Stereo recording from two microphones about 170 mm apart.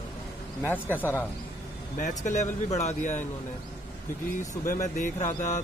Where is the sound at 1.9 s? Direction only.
50° left (ahead or behind).